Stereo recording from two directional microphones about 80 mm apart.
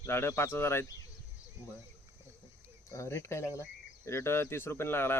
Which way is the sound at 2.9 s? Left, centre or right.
Left.